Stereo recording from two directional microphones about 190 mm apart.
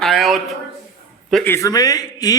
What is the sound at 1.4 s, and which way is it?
Speech, 15° left (ahead or behind).